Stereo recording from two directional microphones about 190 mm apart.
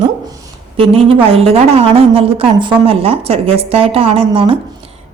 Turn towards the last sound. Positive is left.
turn(degrees=-30)  # may be behind; listen again after turning